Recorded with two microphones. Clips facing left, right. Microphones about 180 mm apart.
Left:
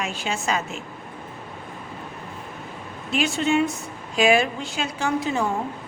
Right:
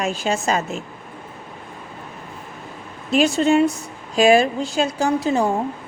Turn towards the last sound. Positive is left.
turn(degrees=-35)  # may be behind; listen again after turning